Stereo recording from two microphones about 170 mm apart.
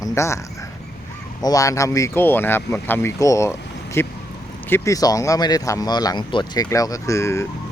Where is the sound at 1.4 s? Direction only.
20° left (ahead or behind).